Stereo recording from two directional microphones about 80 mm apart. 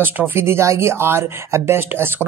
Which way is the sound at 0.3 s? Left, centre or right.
Right.